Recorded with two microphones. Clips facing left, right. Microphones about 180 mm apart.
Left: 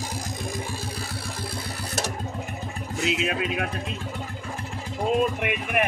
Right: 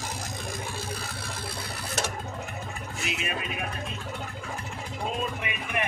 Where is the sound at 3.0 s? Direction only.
90° left.